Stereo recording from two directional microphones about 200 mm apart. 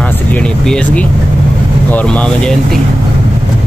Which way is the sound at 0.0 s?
5° left (ahead or behind).